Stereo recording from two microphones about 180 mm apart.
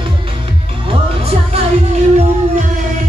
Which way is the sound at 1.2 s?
35° right (ahead or behind).